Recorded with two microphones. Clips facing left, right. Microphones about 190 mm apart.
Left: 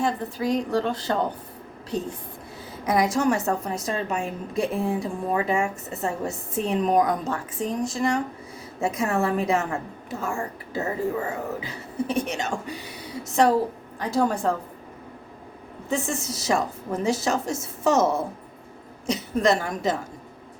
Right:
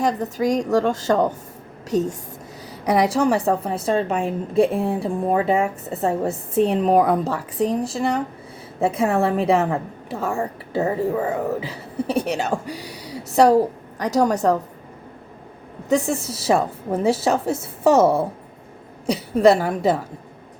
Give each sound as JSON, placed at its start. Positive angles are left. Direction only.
{"t": 0.0, "sound": "a woman's voice", "side_deg": -40}
{"t": 15.9, "sound": "a woman's voice", "side_deg": -35}